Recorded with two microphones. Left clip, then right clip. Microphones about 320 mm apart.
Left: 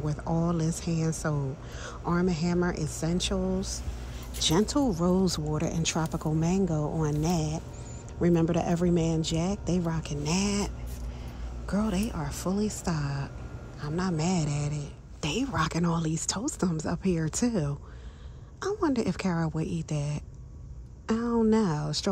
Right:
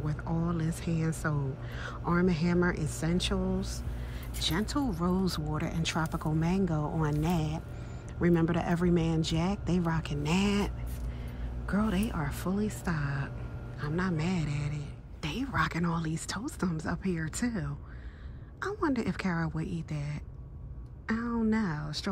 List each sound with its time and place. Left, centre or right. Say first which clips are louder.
0.0 s a woman's voice: left 5 dB; centre